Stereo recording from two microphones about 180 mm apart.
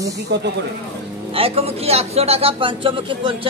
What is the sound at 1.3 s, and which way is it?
A man's voice, 30° right (ahead or behind).